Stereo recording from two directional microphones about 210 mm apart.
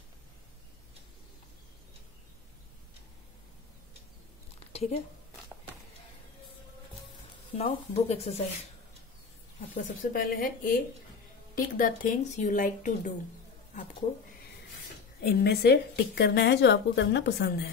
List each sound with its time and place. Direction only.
7.5 s speech: 30° left (ahead or behind)
9.8 s speech: 40° left (ahead or behind)
15.2 s a woman's voice: 50° left (ahead or behind)